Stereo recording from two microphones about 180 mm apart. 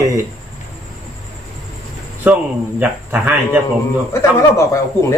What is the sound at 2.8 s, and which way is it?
Speech, 10° right (ahead or behind).